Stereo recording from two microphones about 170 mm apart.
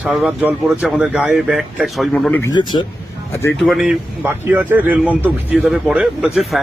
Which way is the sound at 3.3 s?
15° left (ahead or behind).